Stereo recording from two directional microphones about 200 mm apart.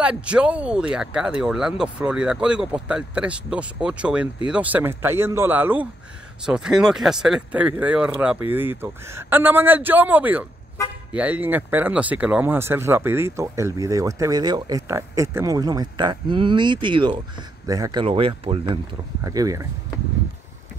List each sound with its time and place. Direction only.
0.0 s speech: 5° right (ahead or behind)
18.0 s speech: 30° right (ahead or behind)
19.2 s speech: 15° right (ahead or behind)